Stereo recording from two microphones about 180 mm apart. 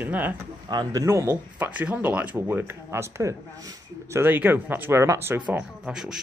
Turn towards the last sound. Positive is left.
turn(degrees=-5)  # may be behind; listen again after turning